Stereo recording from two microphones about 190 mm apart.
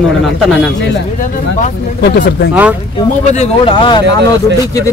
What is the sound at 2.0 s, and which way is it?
Speech, 60° left (ahead or behind).